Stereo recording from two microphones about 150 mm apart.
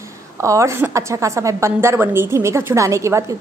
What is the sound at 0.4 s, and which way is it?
A woman's voice, 20° right (ahead or behind).